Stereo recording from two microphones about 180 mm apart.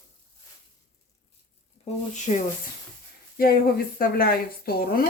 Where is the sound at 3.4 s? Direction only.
55° left (ahead or behind).